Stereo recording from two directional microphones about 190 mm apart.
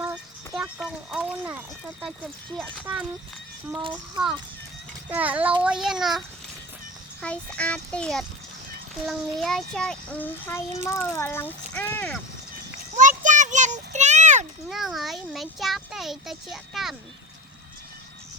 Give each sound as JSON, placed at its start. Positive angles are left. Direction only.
{"t": 0.5, "sound": "a child's voice", "side_deg": -5}
{"t": 3.8, "sound": "a child's voice", "side_deg": -20}
{"t": 5.0, "sound": "a child's voice", "side_deg": -10}
{"t": 13.0, "sound": "a sound", "side_deg": -40}
{"t": 14.7, "sound": "a child's voice", "side_deg": 0}